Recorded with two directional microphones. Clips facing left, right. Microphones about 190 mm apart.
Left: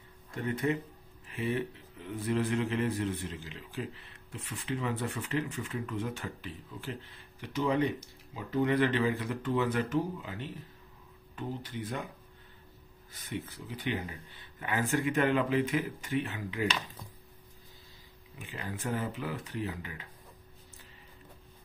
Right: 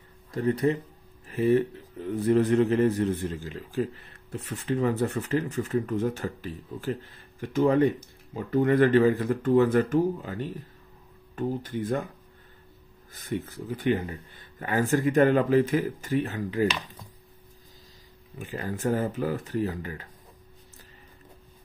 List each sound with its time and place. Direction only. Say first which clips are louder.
0.3 s speech: right 7 dB; 35° right (ahead or behind)
13.1 s speech: right 7 dB; 45° right (ahead or behind)
18.4 s speech: right 9 dB; 45° right (ahead or behind)